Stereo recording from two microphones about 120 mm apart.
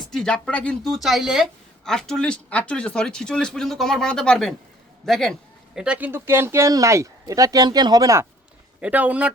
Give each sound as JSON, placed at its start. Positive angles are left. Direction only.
{"t": 0.1, "sound": "speech", "side_deg": 5}
{"t": 0.9, "sound": "speech", "side_deg": 0}
{"t": 5.0, "sound": "a sound", "side_deg": 5}
{"t": 5.8, "sound": "speech", "side_deg": -10}
{"t": 8.8, "sound": "speech", "side_deg": -10}